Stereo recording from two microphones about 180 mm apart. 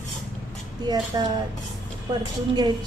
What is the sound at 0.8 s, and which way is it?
Speech, 25° right (ahead or behind).